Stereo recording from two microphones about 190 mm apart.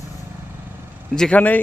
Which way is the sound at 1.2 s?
5° left (ahead or behind).